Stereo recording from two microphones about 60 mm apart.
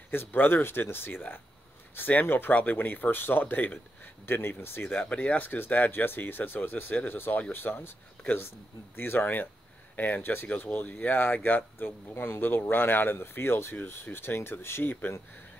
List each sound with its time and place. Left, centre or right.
0.1 s speech: left
5.1 s speech: left
5.4 s speech: left
8.9 s speech: left